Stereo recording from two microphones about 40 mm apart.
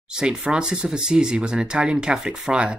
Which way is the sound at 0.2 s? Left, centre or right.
Right.